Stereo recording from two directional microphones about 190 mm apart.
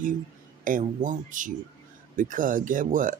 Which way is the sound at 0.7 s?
45° right (ahead or behind).